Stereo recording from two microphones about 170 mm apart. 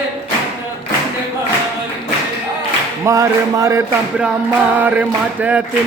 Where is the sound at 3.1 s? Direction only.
20° right (ahead or behind).